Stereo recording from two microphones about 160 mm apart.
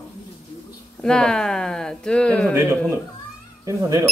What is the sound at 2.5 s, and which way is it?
Speech, 15° right (ahead or behind).